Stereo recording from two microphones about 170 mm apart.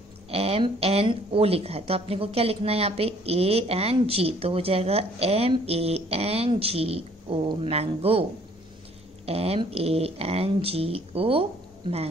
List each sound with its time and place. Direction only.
0.3 s speech: 35° right (ahead or behind)